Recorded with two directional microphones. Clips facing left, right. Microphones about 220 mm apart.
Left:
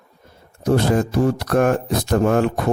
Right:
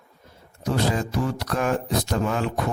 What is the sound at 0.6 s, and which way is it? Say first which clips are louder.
Speech: left 7 dB; 55° left (ahead or behind).